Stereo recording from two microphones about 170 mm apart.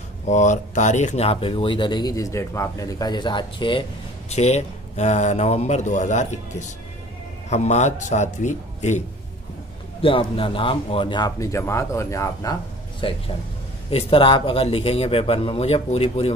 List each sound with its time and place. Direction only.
0.3 s speech: 45° left (ahead or behind); by 3.8 s 30° left (ahead or behind)
4.3 s speech: 40° left (ahead or behind)
10.0 s speech: 30° left (ahead or behind)
13.0 s speech: 30° left (ahead or behind)